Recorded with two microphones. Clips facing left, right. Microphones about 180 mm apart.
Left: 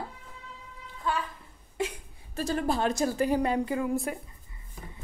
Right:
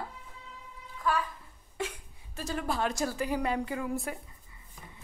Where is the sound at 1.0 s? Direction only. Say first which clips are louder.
Right 1 dB; 25° left (ahead or behind).